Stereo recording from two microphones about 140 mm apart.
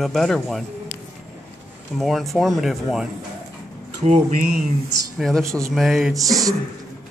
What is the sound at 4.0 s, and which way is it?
Speech, 55° right (ahead or behind).